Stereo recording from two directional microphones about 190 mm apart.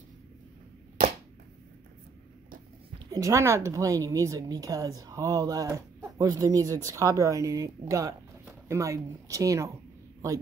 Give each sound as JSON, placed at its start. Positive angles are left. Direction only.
{"t": 3.1, "sound": "a woman's voice", "side_deg": -15}